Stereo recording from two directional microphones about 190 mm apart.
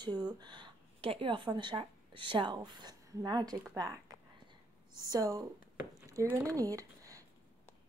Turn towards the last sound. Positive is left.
turn(degrees=-15)  # may be behind; listen again after turning